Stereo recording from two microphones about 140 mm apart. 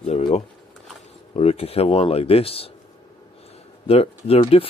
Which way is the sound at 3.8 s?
45° left (ahead or behind).